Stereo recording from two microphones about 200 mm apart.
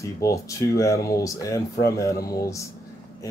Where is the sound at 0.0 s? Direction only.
15° left (ahead or behind).